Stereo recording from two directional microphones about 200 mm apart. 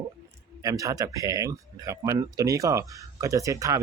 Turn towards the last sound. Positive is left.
turn(degrees=-15)  # may be behind; listen again after turning